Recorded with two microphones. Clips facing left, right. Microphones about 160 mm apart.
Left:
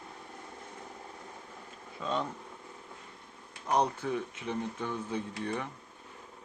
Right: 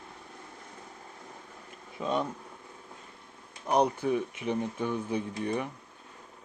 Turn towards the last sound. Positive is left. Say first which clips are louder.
# right 4 dB
turn(degrees=-15)  # may be behind; listen again after turning